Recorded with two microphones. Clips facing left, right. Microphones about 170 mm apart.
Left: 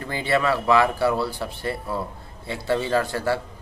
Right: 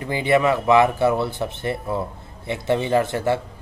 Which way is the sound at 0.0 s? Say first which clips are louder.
Right 4 dB; 15° right (ahead or behind).